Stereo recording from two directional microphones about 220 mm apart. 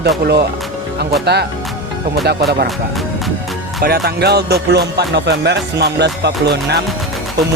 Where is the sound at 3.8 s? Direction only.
45° right (ahead or behind).